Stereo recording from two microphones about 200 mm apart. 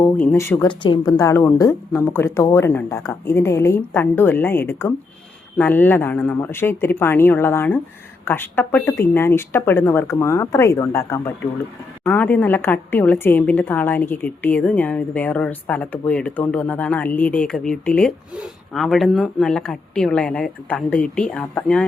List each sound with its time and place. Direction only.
0.0 s a woman's voice: 10° left (ahead or behind)
0.7 s a woman's voice: 25° left (ahead or behind)
1.2 s a woman's voice: 10° left (ahead or behind)